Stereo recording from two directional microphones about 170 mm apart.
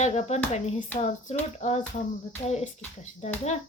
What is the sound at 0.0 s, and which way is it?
Speech, 40° left (ahead or behind).